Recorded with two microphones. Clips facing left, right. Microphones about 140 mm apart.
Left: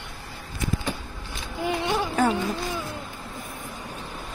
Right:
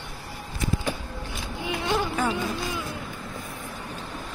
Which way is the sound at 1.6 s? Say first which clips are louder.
Left 1 dB; 50° left (ahead or behind).